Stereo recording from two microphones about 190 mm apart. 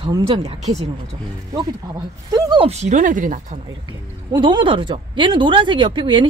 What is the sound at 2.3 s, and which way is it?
Speech, 25° right (ahead or behind).